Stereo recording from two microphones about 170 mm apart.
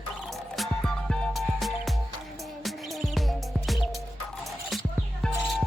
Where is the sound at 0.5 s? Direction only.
Centre (ahead or behind).